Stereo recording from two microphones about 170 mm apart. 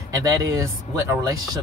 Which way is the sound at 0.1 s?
20° right (ahead or behind).